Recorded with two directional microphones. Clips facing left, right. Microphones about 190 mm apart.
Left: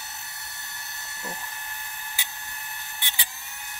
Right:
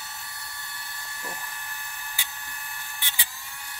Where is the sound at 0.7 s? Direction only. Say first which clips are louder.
Right 1 dB; 25° left (ahead or behind).